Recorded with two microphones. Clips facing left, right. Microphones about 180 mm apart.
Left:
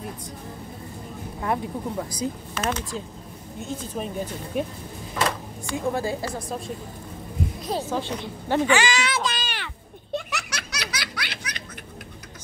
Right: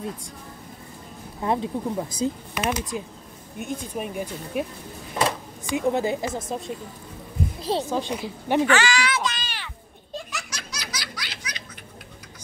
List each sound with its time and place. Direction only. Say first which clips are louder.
1.4 s a woman's voice: right 2 dB; 20° right (ahead or behind)
5.7 s a woman's voice: right 3 dB; 20° right (ahead or behind)
7.9 s a woman's voice: right 1 dB; 15° right (ahead or behind)
8.6 s speech: even; 15° left (ahead or behind)
9.4 s a sound: left 4 dB; 60° left (ahead or behind)
10.1 s baby laughter: left 5 dB; 65° left (ahead or behind)